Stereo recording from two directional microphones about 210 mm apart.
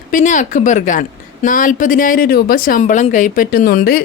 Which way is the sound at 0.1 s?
35° left (ahead or behind).